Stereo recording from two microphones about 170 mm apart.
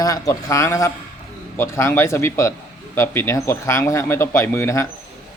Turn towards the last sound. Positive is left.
turn(degrees=15)  # may be behind; listen again after turning